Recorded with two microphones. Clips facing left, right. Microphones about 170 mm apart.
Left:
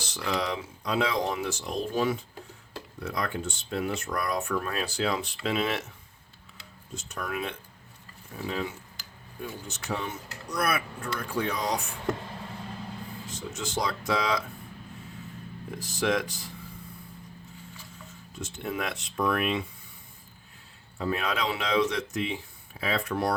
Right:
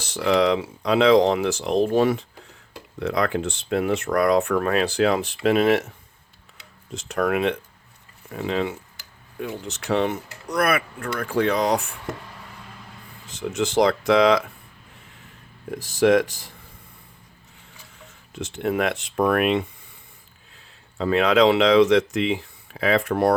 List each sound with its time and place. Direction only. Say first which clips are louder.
0.3 s speech: right 11 dB; 70° right (ahead or behind)
3.0 s speech: right 9 dB; 80° right; by 5.8 s 60° right (ahead or behind)
6.9 s speech: right 12 dB; 75° right (ahead or behind)
13.4 s speech: right 12 dB; 70° right (ahead or behind)
15.7 s speech: right 10 dB; 50° right (ahead or behind)
18.3 s speech: right 9 dB; 65° right (ahead or behind)
21.0 s speech: right 12 dB; 85° right; by 23.3 s 55° right (ahead or behind)